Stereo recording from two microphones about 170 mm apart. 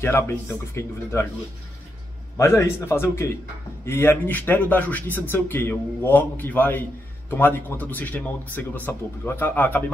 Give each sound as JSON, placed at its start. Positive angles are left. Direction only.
{"t": 0.0, "sound": "speech", "side_deg": 15}
{"t": 2.3, "sound": "speech", "side_deg": 15}